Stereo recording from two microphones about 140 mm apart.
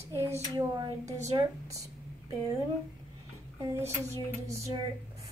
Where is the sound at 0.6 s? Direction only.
20° right (ahead or behind).